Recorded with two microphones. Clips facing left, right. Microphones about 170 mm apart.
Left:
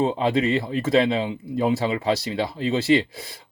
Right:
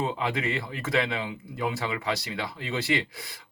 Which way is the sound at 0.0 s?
25° left (ahead or behind).